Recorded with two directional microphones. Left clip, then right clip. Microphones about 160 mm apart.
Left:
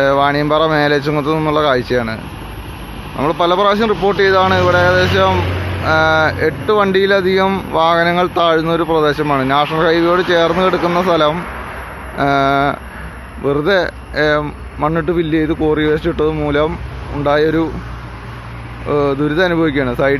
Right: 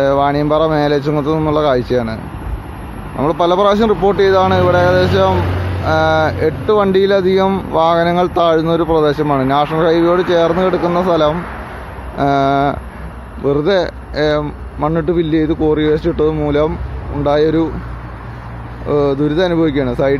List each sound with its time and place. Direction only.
0.0 s speech: 10° right (ahead or behind)
3.2 s speech: 15° right (ahead or behind)
12.2 s speech: 15° right (ahead or behind)
14.4 s speech: centre (ahead or behind)
15.0 s speech: 15° right (ahead or behind)
18.9 s speech: 15° right (ahead or behind)